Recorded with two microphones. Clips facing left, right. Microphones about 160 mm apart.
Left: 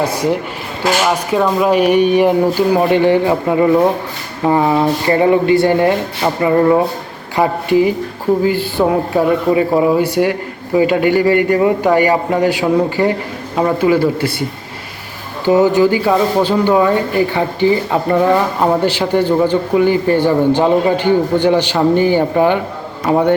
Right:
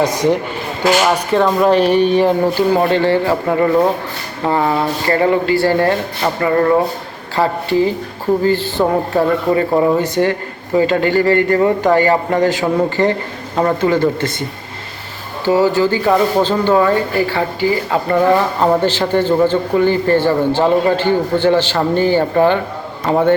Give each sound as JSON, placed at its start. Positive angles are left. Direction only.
{"t": 0.0, "sound": "a man's voice", "side_deg": 10}
{"t": 15.4, "sound": "a man's voice", "side_deg": 20}